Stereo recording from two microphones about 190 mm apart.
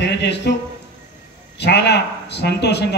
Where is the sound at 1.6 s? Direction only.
60° left (ahead or behind).